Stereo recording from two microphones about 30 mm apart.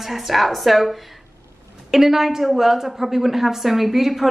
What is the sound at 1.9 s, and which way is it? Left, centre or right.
A woman's voice, centre.